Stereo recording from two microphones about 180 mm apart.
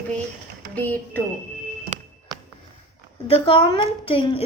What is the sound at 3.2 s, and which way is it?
A woman's voice, 30° left (ahead or behind).